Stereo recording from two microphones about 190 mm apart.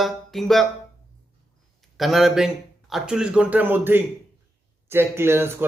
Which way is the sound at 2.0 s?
Centre (ahead or behind).